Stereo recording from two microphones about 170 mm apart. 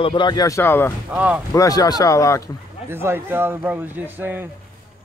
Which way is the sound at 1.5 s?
20° left (ahead or behind).